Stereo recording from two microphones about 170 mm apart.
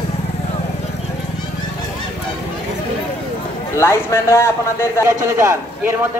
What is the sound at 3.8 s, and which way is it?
Speech, 15° left (ahead or behind).